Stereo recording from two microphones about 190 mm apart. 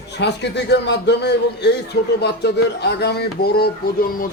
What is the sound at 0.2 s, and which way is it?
A man's voice, 65° left (ahead or behind).